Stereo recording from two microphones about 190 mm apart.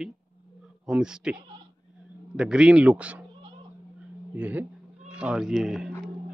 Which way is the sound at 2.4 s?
5° right (ahead or behind).